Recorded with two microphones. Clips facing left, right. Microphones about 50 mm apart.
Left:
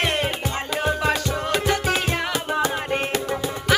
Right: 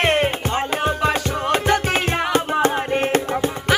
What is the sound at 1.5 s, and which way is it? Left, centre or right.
Music, right.